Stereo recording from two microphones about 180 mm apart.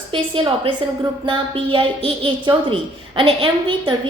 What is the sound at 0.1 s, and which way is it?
A woman's voice, 30° right (ahead or behind).